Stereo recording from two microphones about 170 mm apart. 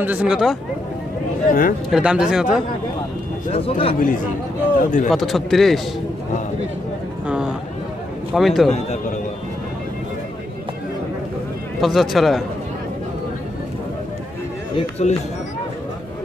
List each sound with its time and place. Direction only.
0.0 s speech: 10° right (ahead or behind)
1.5 s speech: 55° left (ahead or behind)
1.9 s speech: 5° right (ahead or behind)
3.5 s a man's voice: 35° left (ahead or behind)
4.7 s a man's voice: 50° left (ahead or behind)
5.1 s speech: centre (ahead or behind)
7.2 s a sound: 5° right (ahead or behind)
8.3 s speech: centre (ahead or behind)
11.8 s speech: centre (ahead or behind)
14.8 s a man's voice: 35° left (ahead or behind)